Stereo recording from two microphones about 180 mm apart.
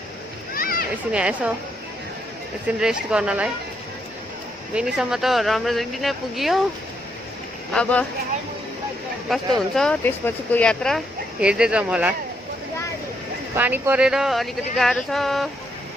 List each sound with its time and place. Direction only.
0.5 s a sound: 55° left (ahead or behind)
1.1 s speech: 5° right (ahead or behind)
2.6 s speech: 5° right (ahead or behind)
4.7 s speech: 5° right (ahead or behind)
7.7 s speech: 5° left (ahead or behind)
9.3 s speech: centre (ahead or behind)
13.6 s speech: 10° right (ahead or behind)